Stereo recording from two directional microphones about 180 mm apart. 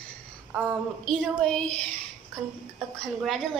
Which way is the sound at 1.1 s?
5° left (ahead or behind).